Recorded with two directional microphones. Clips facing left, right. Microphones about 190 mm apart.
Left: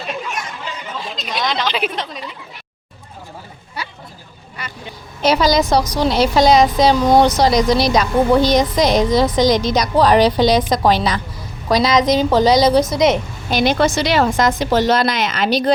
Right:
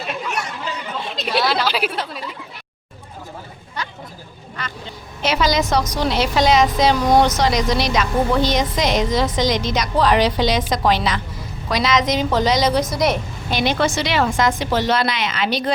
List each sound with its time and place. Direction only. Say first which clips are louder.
1.3 s speech: right 2 dB; 5° right (ahead or behind)
3.8 s vehicle: even; 10° left (ahead or behind)
4.5 s speech: even; 10° left (ahead or behind)
5.2 s a woman's voice: left 4 dB; 35° left (ahead or behind)
12.9 s a woman's voice: left 4 dB; 20° left (ahead or behind)
13.5 s a woman's voice: left 4 dB; 40° left (ahead or behind)